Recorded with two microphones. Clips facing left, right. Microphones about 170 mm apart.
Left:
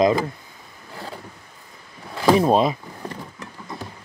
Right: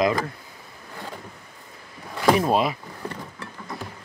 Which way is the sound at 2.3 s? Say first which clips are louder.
Left 4 dB; 25° left (ahead or behind).